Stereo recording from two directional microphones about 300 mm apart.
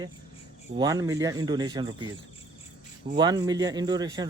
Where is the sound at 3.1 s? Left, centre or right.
Centre.